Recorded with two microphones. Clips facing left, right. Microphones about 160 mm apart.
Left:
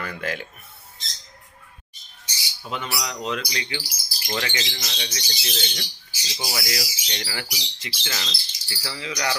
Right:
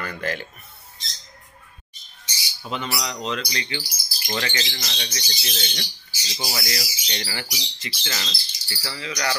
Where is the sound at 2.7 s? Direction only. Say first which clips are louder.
Right 1 dB; centre (ahead or behind).